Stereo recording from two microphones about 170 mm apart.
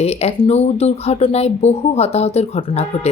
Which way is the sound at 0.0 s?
35° left (ahead or behind).